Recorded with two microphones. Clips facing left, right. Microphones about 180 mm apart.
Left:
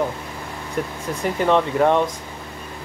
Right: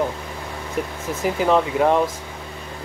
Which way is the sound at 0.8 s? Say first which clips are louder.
Even; 5° right (ahead or behind).